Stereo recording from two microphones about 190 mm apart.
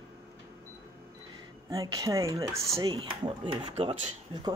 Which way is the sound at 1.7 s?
20° right (ahead or behind).